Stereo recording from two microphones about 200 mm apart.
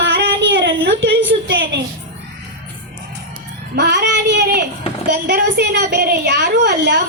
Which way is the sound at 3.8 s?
55° right (ahead or behind).